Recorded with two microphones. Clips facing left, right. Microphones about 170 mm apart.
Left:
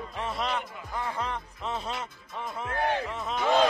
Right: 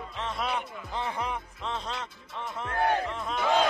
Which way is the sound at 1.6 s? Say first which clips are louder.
Left 3 dB; 10° left (ahead or behind).